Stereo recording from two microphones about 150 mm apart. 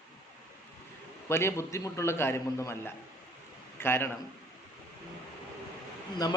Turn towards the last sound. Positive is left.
turn(degrees=25)  # may be behind; listen again after turning